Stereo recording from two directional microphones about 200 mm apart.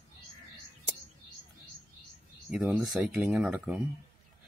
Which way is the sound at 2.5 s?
5° right (ahead or behind).